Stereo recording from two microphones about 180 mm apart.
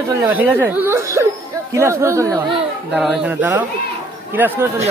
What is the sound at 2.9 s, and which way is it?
Speech, 5° right (ahead or behind).